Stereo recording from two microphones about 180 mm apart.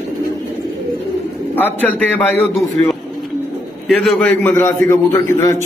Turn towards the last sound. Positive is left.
turn(degrees=15)  # may be behind; listen again after turning